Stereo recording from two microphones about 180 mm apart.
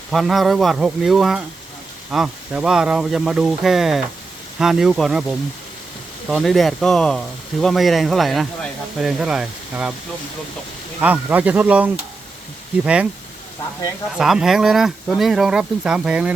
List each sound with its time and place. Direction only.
0.1 s speech: centre (ahead or behind)
6.2 s speech: centre (ahead or behind)
11.0 s speech: 10° right (ahead or behind)
14.2 s speech: 5° right (ahead or behind)